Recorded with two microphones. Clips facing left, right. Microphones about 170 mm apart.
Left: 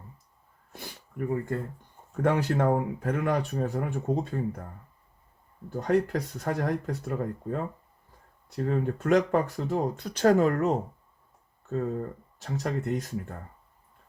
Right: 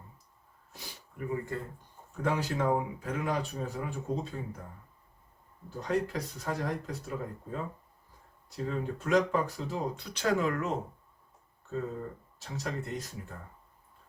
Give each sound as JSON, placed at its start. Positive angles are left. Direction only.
{"t": 0.7, "sound": "a sound", "side_deg": 55}
{"t": 2.2, "sound": "speech", "side_deg": 55}
{"t": 5.7, "sound": "speech", "side_deg": 55}
{"t": 12.4, "sound": "speech", "side_deg": 50}